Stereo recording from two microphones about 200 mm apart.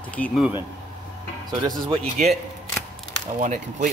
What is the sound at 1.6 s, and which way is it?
Speech, 25° right (ahead or behind).